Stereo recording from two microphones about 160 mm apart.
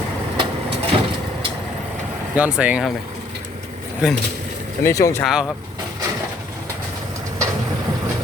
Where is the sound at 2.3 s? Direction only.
10° right (ahead or behind).